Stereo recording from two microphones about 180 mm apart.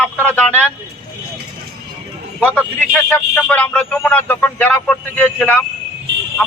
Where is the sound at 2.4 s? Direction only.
5° left (ahead or behind).